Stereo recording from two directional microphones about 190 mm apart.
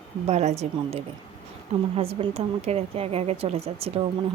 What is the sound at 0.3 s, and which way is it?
A woman's voice, 35° right (ahead or behind).